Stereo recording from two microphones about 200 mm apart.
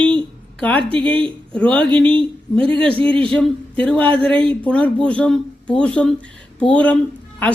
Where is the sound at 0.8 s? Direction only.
25° right (ahead or behind).